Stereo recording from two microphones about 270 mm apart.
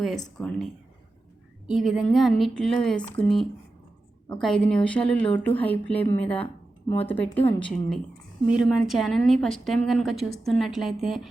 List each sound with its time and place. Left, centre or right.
0.3 s a woman's voice: centre
6.4 s a sound: left
7.1 s a woman's voice: centre